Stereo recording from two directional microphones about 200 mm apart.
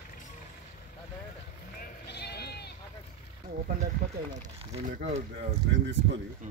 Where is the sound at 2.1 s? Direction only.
55° left (ahead or behind).